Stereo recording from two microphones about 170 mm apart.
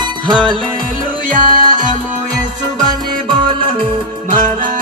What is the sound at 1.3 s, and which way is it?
Music, 50° right (ahead or behind).